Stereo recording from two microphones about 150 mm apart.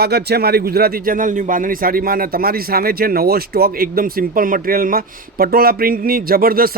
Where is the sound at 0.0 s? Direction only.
90° right.